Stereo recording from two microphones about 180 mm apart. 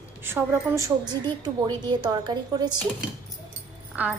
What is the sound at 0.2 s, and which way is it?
A woman's voice, 10° right (ahead or behind).